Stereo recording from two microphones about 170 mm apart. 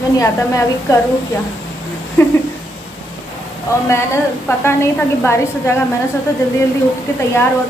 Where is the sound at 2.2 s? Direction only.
15° left (ahead or behind).